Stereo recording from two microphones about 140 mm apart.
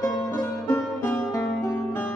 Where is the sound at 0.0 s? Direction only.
20° left (ahead or behind).